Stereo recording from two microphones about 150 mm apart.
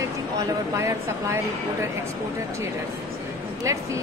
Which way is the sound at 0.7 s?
20° right (ahead or behind).